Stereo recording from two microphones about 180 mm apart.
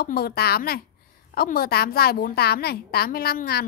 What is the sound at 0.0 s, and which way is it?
A woman's voice, 60° left (ahead or behind).